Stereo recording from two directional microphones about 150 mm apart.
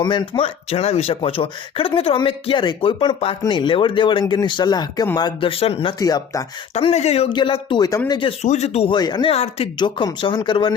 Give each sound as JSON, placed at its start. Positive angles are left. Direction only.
{"t": 0.0, "sound": "speech", "side_deg": 30}
{"t": 6.0, "sound": "speech", "side_deg": 25}
{"t": 6.7, "sound": "speech", "side_deg": 45}
{"t": 7.8, "sound": "speech", "side_deg": 25}
{"t": 8.4, "sound": "speech", "side_deg": 50}
{"t": 9.0, "sound": "speech", "side_deg": 30}
{"t": 9.3, "sound": "speech", "side_deg": 40}
{"t": 9.7, "sound": "speech", "side_deg": 30}